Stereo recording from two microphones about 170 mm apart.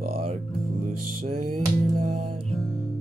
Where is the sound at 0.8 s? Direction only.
55° right (ahead or behind).